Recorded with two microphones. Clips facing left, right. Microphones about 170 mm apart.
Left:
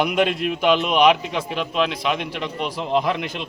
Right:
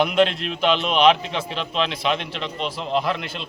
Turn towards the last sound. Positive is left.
turn(degrees=15)  # may be behind; listen again after turning